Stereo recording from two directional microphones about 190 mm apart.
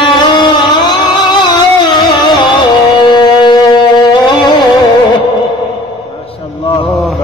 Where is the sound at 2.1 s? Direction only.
25° left (ahead or behind).